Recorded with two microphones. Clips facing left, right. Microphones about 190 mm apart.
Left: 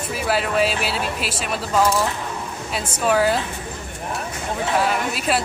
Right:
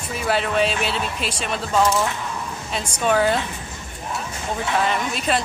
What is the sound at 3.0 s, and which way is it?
Speech, 5° left (ahead or behind).